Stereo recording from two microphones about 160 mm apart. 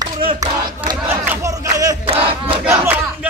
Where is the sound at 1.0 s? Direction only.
10° right (ahead or behind).